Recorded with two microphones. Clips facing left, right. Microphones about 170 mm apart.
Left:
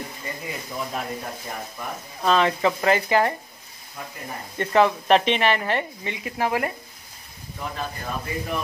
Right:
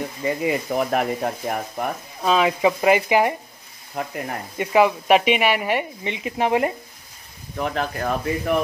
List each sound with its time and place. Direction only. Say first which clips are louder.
0.4 s speech: right 10 dB; 75° right (ahead or behind)
2.2 s speech: right 2 dB; 5° right (ahead or behind)
3.9 s speech: right 8 dB; 75° right (ahead or behind)
4.6 s speech: right 2 dB; 10° right (ahead or behind)
7.5 s speech: right 7 dB; 70° right (ahead or behind)